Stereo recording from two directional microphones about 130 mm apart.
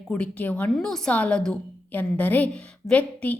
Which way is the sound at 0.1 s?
10° left (ahead or behind).